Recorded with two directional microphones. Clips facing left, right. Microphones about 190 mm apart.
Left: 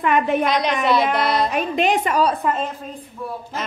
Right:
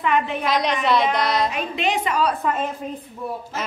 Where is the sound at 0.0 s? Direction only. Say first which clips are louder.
Left 4 dB; 50° left (ahead or behind).